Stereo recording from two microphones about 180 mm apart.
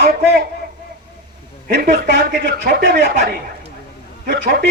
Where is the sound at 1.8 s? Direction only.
55° right (ahead or behind).